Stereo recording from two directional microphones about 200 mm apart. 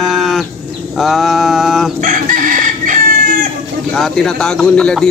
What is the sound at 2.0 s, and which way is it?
Chicken, 40° right (ahead or behind).